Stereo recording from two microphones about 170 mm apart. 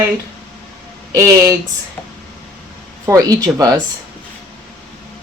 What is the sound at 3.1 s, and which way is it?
Speech, 20° right (ahead or behind).